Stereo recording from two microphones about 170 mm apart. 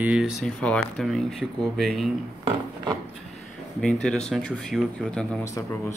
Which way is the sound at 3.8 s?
5° left (ahead or behind).